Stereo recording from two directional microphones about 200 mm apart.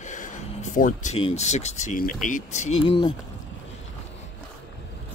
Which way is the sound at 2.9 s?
25° left (ahead or behind).